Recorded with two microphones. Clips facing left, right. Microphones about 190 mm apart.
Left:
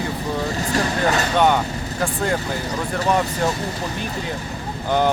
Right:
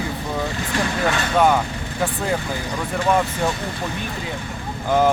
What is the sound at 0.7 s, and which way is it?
Speech, 40° left (ahead or behind).